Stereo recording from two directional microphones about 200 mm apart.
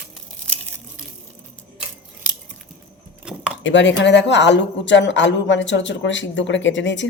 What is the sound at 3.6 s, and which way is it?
A woman's voice, 65° left (ahead or behind).